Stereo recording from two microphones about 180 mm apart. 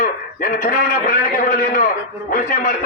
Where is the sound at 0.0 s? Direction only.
50° left (ahead or behind).